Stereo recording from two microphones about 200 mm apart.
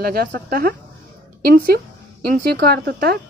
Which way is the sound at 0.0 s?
50° right (ahead or behind).